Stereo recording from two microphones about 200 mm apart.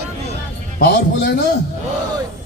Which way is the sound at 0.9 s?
50° left (ahead or behind).